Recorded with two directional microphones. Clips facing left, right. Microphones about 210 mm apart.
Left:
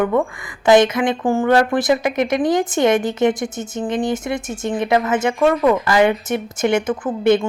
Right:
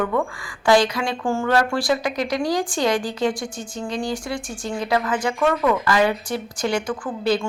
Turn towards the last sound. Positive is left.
turn(degrees=20)  # may be behind; listen again after turning